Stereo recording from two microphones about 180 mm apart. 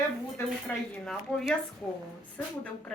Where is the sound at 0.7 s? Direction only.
10° left (ahead or behind).